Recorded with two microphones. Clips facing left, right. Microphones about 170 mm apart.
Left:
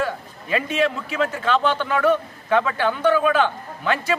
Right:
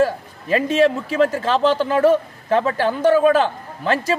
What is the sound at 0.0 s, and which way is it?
A man's voice, 40° right (ahead or behind).